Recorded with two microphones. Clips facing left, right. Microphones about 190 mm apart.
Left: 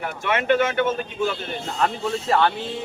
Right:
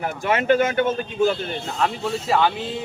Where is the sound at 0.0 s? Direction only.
35° right (ahead or behind).